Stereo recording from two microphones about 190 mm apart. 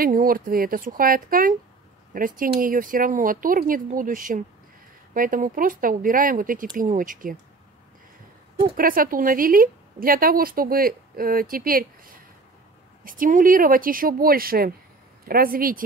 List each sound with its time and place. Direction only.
0.0 s a woman's voice: 50° right (ahead or behind)
8.7 s a woman's voice: 50° right (ahead or behind)